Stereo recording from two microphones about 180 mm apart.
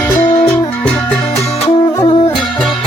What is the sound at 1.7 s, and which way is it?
Music, 20° left (ahead or behind).